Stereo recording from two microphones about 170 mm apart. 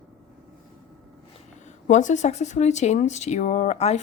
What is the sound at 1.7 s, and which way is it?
Speech, 45° left (ahead or behind).